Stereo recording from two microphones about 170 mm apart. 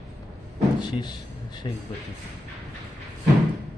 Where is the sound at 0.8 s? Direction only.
25° left (ahead or behind).